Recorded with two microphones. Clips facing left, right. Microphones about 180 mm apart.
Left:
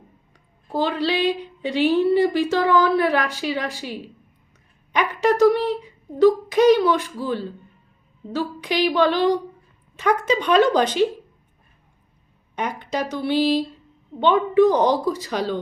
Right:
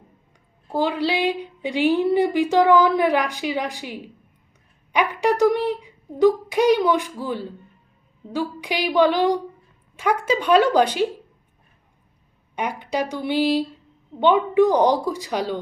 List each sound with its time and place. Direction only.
0.7 s a woman's voice: 10° right (ahead or behind)
12.5 s a woman's voice: 10° right (ahead or behind)